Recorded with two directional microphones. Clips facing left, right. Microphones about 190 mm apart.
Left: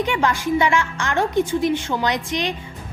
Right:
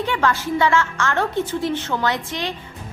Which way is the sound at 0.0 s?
15° left (ahead or behind).